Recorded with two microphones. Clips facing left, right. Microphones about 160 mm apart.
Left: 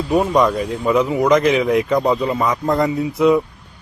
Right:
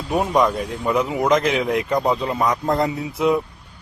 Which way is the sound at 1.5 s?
80° left.